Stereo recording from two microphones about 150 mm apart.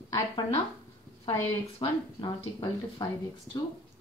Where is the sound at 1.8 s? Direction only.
30° left (ahead or behind).